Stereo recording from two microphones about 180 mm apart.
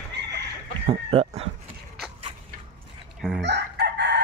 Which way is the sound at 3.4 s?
75° right (ahead or behind).